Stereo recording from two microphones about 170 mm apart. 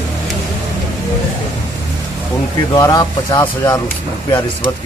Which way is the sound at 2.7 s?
20° left (ahead or behind).